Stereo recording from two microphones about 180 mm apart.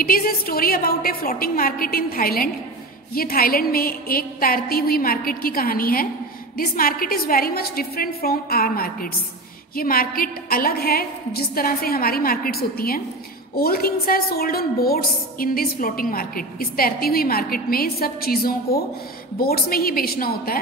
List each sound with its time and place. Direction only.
0.0 s a woman's voice: 55° left (ahead or behind)